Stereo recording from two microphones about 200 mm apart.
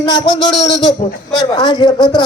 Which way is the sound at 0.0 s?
25° left (ahead or behind).